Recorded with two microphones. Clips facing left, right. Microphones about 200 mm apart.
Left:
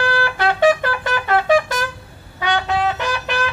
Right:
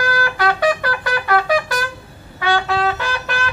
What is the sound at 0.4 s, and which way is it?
Trumpet, 25° left (ahead or behind).